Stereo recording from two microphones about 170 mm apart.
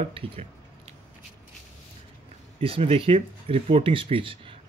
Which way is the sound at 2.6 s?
35° right (ahead or behind).